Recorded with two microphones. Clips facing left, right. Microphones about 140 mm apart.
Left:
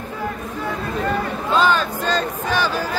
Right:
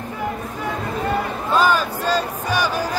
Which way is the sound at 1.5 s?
10° right (ahead or behind).